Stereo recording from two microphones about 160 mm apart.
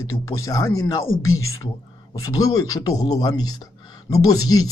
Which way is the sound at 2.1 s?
20° left (ahead or behind).